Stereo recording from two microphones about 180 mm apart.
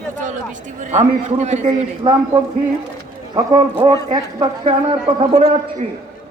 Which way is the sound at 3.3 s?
25° right (ahead or behind).